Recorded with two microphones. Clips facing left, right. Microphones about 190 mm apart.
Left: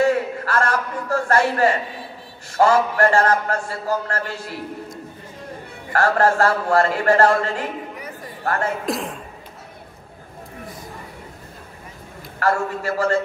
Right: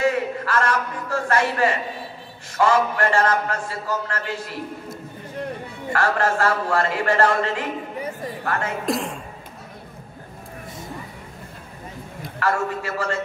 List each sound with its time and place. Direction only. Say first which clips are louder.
0.0 s a sound: left 3 dB; 40° left (ahead or behind)
2.5 s a man's voice: left 3 dB; 40° left (ahead or behind)
5.9 s a man's voice: left 4 dB; 40° left (ahead or behind)
8.8 s speech: right 1 dB; centre (ahead or behind)
12.4 s a man's voice: left 2 dB; 40° left (ahead or behind)